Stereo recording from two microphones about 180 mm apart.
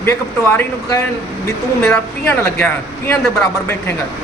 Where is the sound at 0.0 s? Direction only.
15° left (ahead or behind).